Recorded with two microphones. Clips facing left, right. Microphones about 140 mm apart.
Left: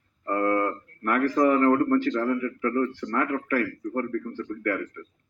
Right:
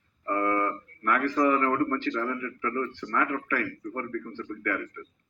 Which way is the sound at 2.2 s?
40° left (ahead or behind).